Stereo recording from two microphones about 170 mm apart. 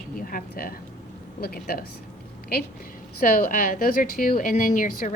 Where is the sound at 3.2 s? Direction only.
55° left (ahead or behind).